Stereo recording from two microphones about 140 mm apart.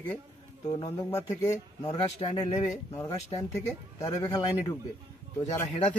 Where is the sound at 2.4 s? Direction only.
25° left (ahead or behind).